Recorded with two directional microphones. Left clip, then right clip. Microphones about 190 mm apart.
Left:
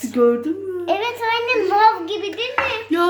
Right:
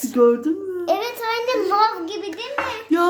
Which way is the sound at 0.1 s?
Centre (ahead or behind).